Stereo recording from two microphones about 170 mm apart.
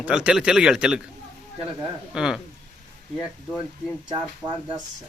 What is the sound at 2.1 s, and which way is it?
Speech, 5° right (ahead or behind).